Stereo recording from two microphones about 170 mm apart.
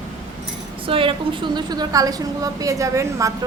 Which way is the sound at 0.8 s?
30° right (ahead or behind).